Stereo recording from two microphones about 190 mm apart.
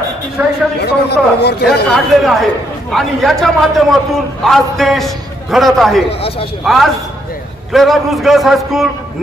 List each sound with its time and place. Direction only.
0.4 s speech: 10° right (ahead or behind)
0.7 s a man's voice: 60° left (ahead or behind)
1.9 s a man's voice: centre (ahead or behind)
6.0 s speech: 30° left (ahead or behind)
6.6 s a man's voice: centre (ahead or behind)